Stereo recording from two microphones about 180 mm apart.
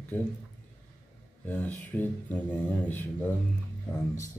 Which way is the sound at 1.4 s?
10° left (ahead or behind).